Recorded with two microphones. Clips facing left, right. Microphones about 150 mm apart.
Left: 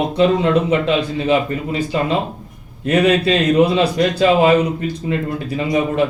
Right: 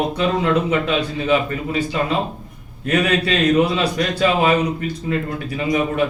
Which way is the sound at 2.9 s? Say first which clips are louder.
Left 4 dB; 30° left (ahead or behind).